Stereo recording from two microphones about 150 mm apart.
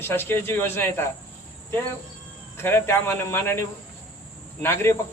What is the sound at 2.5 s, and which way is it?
Speech, 15° left (ahead or behind).